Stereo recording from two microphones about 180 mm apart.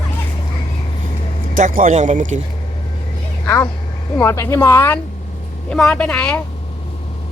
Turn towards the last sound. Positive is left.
turn(degrees=5)  # may be behind; listen again after turning